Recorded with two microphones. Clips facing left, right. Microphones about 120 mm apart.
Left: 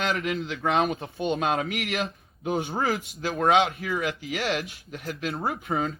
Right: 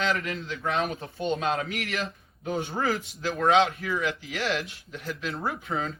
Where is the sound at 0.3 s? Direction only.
70° left (ahead or behind).